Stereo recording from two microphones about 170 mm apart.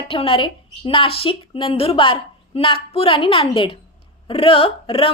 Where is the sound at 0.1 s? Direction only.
30° left (ahead or behind).